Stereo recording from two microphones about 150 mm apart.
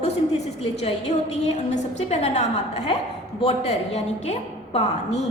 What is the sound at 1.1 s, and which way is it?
A woman's voice, 50° left (ahead or behind).